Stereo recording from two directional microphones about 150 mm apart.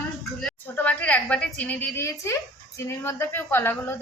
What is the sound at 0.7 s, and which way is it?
A woman's voice, 10° left (ahead or behind).